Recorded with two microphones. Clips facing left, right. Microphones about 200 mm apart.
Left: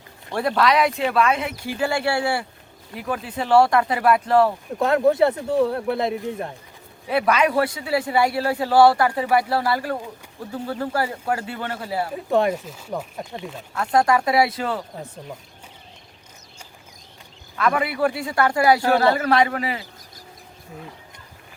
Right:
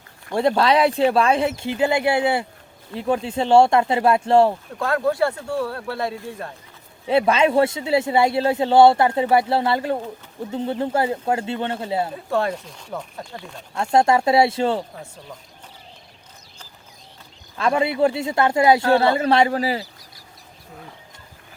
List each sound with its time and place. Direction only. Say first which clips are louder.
0.3 s a man's voice: right 2 dB; 25° right (ahead or behind)
4.8 s speech: left 3 dB; 20° left (ahead or behind)
7.1 s a man's voice: right 3 dB; 25° right (ahead or behind)
12.1 s speech: left 3 dB; 15° left (ahead or behind)
13.7 s a man's voice: right 2 dB; 25° right (ahead or behind)
17.6 s a man's voice: right 2 dB; 25° right (ahead or behind)